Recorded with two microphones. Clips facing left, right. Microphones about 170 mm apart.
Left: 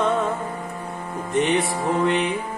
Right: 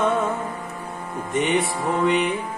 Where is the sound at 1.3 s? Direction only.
Centre (ahead or behind).